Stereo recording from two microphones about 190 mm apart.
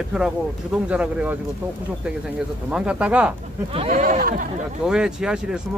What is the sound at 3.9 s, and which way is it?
Speech, 45° right (ahead or behind).